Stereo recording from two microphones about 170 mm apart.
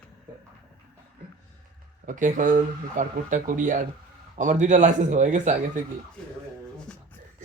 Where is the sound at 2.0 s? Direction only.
50° right (ahead or behind).